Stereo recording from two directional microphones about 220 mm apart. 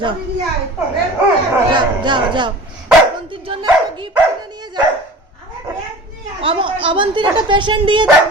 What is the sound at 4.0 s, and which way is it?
Dog, 20° right (ahead or behind).